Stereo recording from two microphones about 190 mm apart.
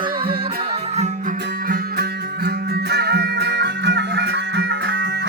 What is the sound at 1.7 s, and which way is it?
Music, 55° right (ahead or behind).